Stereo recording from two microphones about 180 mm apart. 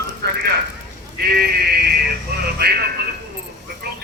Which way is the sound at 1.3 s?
60° right (ahead or behind).